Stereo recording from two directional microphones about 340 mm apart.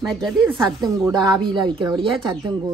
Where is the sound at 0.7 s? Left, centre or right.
Centre.